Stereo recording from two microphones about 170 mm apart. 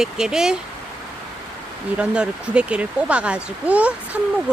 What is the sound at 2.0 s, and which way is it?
Speech, 5° right (ahead or behind).